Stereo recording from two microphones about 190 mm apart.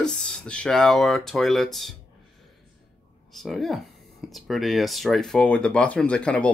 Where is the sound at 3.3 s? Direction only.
Centre (ahead or behind).